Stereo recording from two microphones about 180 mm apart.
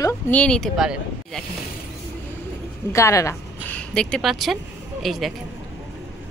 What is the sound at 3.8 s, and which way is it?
Speech, 5° left (ahead or behind).